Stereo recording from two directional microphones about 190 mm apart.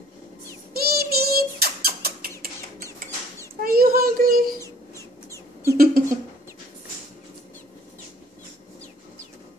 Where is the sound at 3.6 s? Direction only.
50° right (ahead or behind).